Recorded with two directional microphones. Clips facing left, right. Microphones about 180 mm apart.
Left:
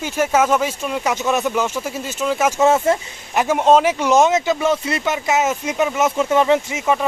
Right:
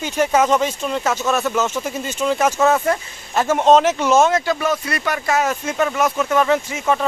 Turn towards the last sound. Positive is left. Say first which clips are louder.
# left 1 dB
turn(degrees=15)  # may be behind; listen again after turning